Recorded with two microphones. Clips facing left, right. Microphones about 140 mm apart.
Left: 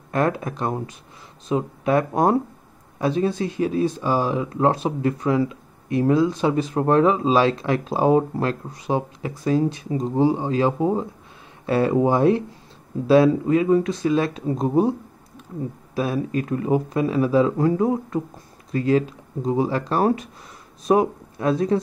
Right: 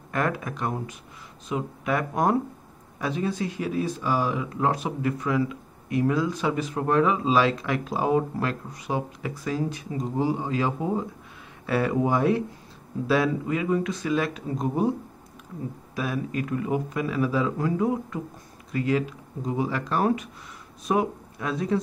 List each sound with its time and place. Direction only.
0.1 s speech: 30° left (ahead or behind)